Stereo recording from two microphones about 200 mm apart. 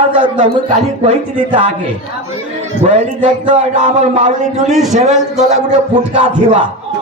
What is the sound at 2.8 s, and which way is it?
Speech, 35° right (ahead or behind).